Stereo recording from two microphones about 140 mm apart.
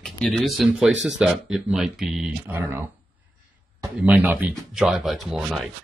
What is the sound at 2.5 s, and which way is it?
Speech, 15° right (ahead or behind).